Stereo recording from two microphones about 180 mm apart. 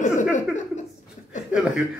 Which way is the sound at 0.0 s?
45° left (ahead or behind).